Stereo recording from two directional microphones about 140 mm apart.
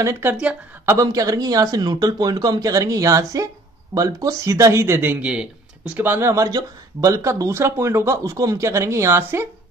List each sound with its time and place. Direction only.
0.0 s speech: 20° right (ahead or behind)
0.8 s speech: 25° right (ahead or behind)